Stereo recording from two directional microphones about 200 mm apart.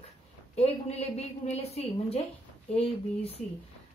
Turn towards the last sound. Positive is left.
turn(degrees=30)  # may be behind; listen again after turning